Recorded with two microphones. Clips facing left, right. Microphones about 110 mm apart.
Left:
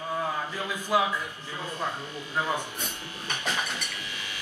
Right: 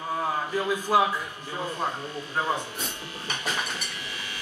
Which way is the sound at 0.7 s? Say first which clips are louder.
Right 3 dB; 45° right (ahead or behind).